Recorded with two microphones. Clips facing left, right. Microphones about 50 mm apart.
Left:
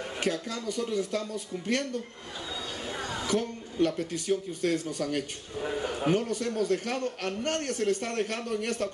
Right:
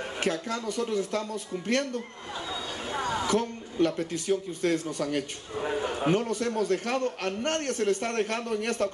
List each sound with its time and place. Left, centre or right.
0.2 s speech: right
3.2 s a man's voice: right
5.6 s a man's voice: right
6.0 s a man's voice: right